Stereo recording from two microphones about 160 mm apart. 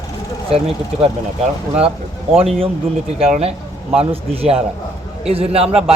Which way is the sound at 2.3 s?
35° right (ahead or behind).